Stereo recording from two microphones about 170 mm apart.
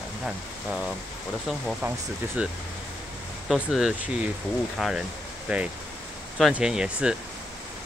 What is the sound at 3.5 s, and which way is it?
Speech, centre (ahead or behind).